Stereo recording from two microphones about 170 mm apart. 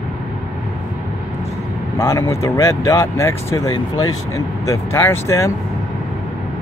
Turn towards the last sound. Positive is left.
turn(degrees=15)  # may be behind; listen again after turning